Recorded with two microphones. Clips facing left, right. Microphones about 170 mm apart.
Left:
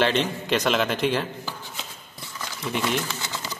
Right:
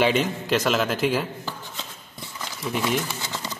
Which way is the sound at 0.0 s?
5° right (ahead or behind).